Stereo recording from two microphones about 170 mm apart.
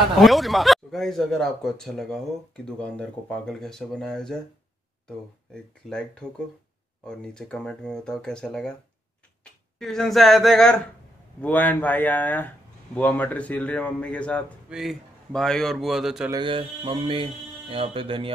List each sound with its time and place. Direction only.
0.2 s a man's voice: centre (ahead or behind)
16.3 s speech: 30° right (ahead or behind)